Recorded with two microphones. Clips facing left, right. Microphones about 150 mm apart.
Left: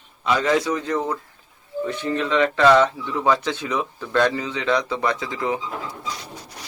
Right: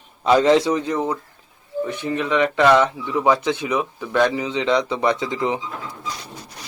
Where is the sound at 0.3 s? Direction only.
30° right (ahead or behind).